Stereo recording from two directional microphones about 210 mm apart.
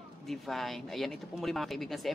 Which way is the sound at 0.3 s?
Centre (ahead or behind).